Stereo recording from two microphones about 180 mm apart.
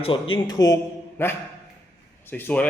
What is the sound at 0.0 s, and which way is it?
A man's voice, 25° left (ahead or behind).